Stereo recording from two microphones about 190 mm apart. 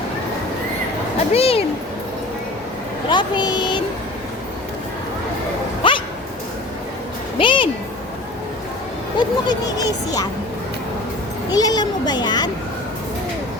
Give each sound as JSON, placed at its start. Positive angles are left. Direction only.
{"t": 1.3, "sound": "speech", "side_deg": 30}
{"t": 3.1, "sound": "speech", "side_deg": 25}
{"t": 5.8, "sound": "bow-wow", "side_deg": 25}
{"t": 7.3, "sound": "speech", "side_deg": 25}
{"t": 9.1, "sound": "speech", "side_deg": 20}
{"t": 11.5, "sound": "speech", "side_deg": 20}